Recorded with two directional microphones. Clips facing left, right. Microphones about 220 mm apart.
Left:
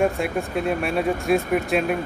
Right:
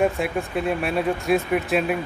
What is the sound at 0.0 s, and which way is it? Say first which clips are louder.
Speech: even; centre (ahead or behind).